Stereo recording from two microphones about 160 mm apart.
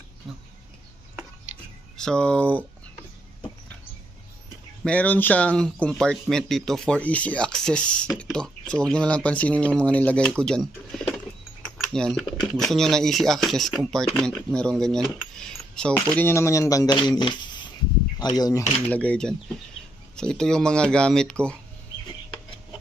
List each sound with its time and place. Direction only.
0.2 s speech: centre (ahead or behind)
2.0 s speech: 5° left (ahead or behind)
4.9 s speech: 10° left (ahead or behind)
11.6 s typing: 5° left (ahead or behind)
12.4 s speech: centre (ahead or behind); by 18.6 s 25° left (ahead or behind)
18.9 s speech: 10° left (ahead or behind)